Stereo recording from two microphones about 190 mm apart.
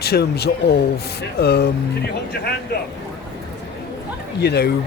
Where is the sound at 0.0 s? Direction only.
55° left (ahead or behind).